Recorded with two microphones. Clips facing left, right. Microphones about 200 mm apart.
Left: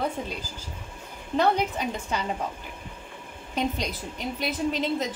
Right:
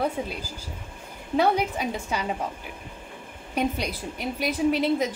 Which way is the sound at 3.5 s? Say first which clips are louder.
Right 2 dB; 10° right (ahead or behind).